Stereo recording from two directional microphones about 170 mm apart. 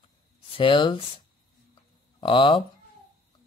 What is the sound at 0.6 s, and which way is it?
Speech, 30° left (ahead or behind).